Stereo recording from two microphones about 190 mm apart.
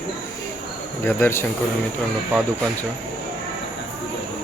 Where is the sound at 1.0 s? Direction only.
10° left (ahead or behind).